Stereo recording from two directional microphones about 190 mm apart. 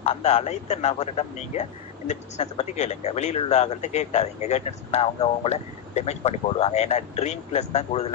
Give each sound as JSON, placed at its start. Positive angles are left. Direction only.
{"t": 0.0, "sound": "speech", "side_deg": 35}